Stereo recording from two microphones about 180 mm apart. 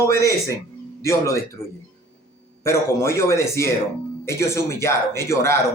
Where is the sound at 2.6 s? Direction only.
15° left (ahead or behind).